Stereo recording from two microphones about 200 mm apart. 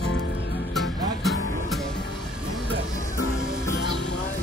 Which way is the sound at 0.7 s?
Centre (ahead or behind).